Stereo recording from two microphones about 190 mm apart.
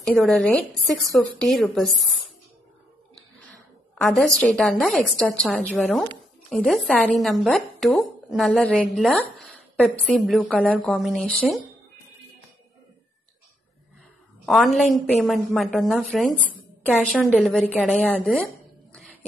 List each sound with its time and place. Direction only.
0.0 s a woman's voice: 5° left (ahead or behind)
4.0 s a woman's voice: 5° left (ahead or behind)
14.4 s a woman's voice: centre (ahead or behind)
18.9 s a sound: 5° left (ahead or behind)